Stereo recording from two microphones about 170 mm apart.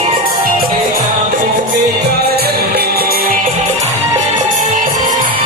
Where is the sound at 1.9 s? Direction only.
70° right (ahead or behind); by 3.5 s 55° right (ahead or behind).